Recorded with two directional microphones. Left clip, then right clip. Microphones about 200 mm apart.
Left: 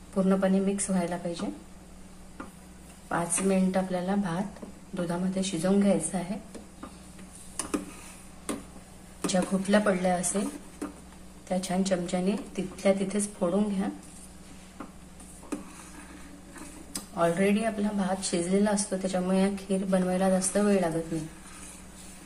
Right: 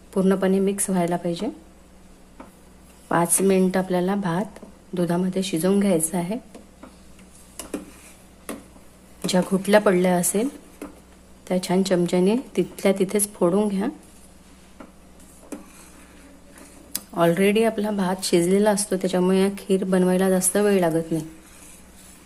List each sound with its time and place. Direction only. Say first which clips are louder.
0.1 s a woman's voice: right 5 dB; 45° right (ahead or behind)
3.1 s a woman's voice: right 8 dB; 50° right (ahead or behind)
9.2 s a woman's voice: right 6 dB; 50° right (ahead or behind)
11.4 s a woman's voice: right 7 dB; 50° right (ahead or behind)
16.9 s a woman's voice: right 6 dB; 50° right (ahead or behind)